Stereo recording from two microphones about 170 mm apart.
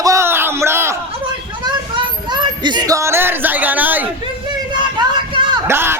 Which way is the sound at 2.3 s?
25° right (ahead or behind).